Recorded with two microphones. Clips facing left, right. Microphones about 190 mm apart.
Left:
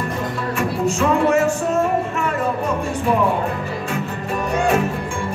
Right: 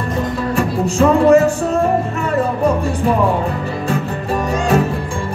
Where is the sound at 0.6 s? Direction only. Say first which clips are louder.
Right 4 dB; 35° right (ahead or behind).